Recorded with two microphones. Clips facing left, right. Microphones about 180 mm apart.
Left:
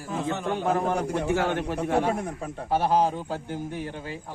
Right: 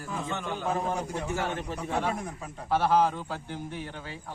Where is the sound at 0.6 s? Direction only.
65° left (ahead or behind).